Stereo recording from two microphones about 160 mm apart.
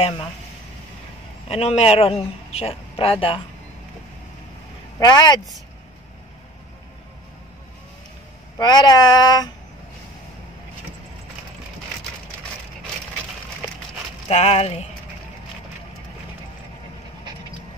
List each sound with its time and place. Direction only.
1.5 s speech: 40° left (ahead or behind)
4.9 s speech: 25° left (ahead or behind)
8.5 s speech: 25° left (ahead or behind)
14.3 s speech: 40° left (ahead or behind)